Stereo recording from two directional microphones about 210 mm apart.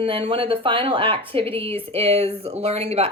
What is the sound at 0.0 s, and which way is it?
A woman's voice, 25° right (ahead or behind).